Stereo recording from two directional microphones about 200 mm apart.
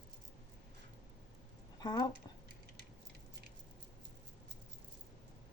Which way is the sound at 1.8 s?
20° left (ahead or behind).